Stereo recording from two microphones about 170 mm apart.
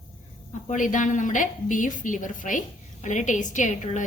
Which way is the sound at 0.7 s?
50° left (ahead or behind).